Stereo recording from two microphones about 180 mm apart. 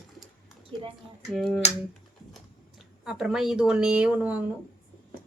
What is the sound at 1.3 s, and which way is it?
Speech, centre (ahead or behind).